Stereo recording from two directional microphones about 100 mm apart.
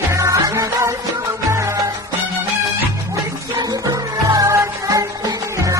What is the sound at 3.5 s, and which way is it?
Music, 40° right (ahead or behind).